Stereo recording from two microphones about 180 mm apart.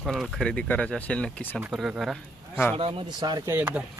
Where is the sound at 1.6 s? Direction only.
5° right (ahead or behind).